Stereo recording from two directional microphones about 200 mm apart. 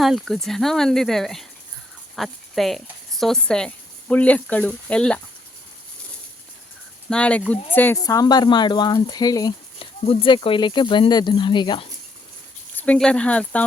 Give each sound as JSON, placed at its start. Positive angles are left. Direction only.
{"t": 0.0, "sound": "speech", "side_deg": 0}
{"t": 7.1, "sound": "speech", "side_deg": 5}
{"t": 12.7, "sound": "speech", "side_deg": 5}